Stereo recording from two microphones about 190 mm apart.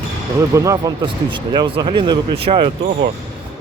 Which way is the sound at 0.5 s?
15° right (ahead or behind).